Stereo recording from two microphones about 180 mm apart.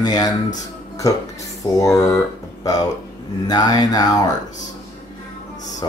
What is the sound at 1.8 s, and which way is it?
Speech, 20° left (ahead or behind).